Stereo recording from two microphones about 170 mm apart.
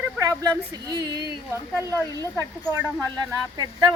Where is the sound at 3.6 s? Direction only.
20° right (ahead or behind).